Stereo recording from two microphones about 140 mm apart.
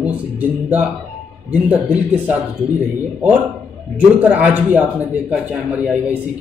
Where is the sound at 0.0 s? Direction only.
10° right (ahead or behind).